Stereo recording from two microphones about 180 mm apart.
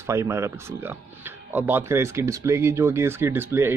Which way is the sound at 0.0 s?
15° right (ahead or behind).